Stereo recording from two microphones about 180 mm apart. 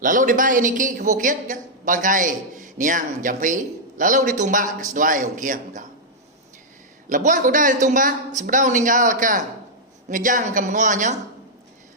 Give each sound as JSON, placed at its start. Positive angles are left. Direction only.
{"t": 0.0, "sound": "a woman's voice", "side_deg": -50}
{"t": 7.1, "sound": "a woman's voice", "side_deg": -45}